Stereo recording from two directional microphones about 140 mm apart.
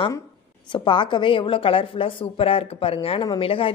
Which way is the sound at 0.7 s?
35° left (ahead or behind).